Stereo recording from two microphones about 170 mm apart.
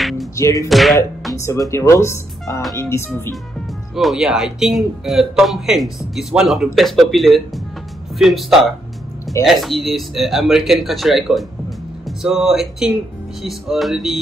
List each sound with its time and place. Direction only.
0.4 s speech: 20° left (ahead or behind)
0.7 s speech: centre (ahead or behind)
1.3 s speech: 20° left (ahead or behind)
3.9 s speech: centre (ahead or behind)